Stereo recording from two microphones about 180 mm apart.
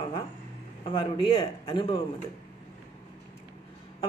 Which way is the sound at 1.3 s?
30° left (ahead or behind).